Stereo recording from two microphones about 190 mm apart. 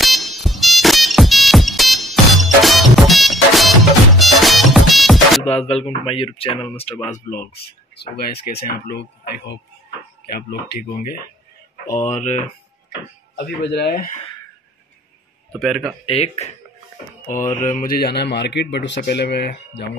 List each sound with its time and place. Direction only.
0.0 s music: centre (ahead or behind)
5.4 s speech: 35° left (ahead or behind)
7.2 s a man's voice: 55° left (ahead or behind)
11.9 s speech: 40° left (ahead or behind)
13.4 s a man's voice: 60° left (ahead or behind)
15.6 s speech: centre (ahead or behind)
16.1 s speech: 35° left (ahead or behind)
17.6 s a man's voice: 45° left (ahead or behind); by 19.9 s 60° left (ahead or behind)